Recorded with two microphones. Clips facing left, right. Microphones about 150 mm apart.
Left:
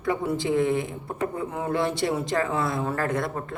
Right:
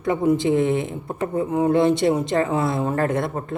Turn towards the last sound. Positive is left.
turn(degrees=-25)  # may be behind; listen again after turning